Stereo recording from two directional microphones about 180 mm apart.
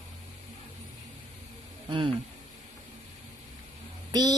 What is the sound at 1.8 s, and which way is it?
Speech, 30° right (ahead or behind).